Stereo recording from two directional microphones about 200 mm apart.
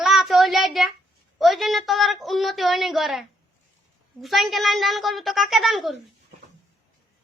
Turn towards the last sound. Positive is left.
turn(degrees=0)  # may be behind; listen again after turning